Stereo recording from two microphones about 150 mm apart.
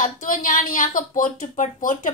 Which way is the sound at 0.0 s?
60° left (ahead or behind).